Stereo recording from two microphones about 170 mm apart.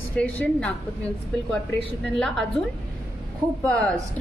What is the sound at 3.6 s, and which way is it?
Speech, 5° left (ahead or behind).